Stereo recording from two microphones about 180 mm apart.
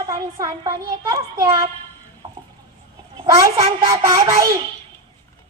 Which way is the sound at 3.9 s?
20° right (ahead or behind).